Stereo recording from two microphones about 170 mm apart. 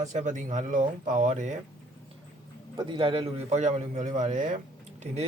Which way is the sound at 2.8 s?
30° right (ahead or behind).